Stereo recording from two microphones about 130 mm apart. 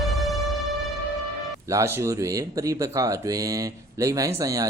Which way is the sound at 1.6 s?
25° right (ahead or behind).